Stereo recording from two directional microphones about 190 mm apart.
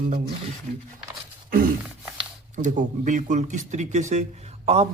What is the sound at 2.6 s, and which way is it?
A man's voice, 40° right (ahead or behind).